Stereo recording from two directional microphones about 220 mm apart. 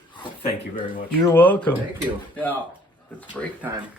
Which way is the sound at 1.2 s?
10° left (ahead or behind).